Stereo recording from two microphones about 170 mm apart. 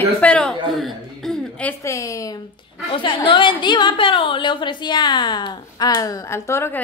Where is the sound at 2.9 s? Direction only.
30° left (ahead or behind).